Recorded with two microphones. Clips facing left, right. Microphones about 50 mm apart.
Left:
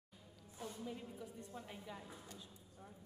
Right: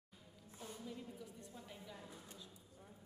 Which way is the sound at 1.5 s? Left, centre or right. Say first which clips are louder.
Left 4 dB; left.